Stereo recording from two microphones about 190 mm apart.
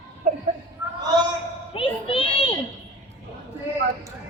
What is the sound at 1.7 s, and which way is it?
Children playing, 30° left (ahead or behind).